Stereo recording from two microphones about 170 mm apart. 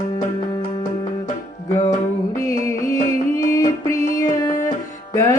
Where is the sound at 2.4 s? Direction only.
20° left (ahead or behind).